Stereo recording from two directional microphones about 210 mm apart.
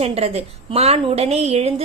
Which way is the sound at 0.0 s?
30° right (ahead or behind).